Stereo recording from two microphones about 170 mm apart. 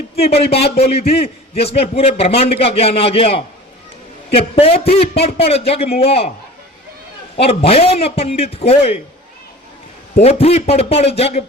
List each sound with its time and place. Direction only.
0.2 s a man's voice: 35° left (ahead or behind)
7.3 s a man's voice: 35° left (ahead or behind)
10.2 s a man's voice: 35° left (ahead or behind)